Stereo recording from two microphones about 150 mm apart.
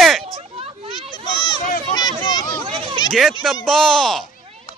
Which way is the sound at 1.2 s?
30° left (ahead or behind).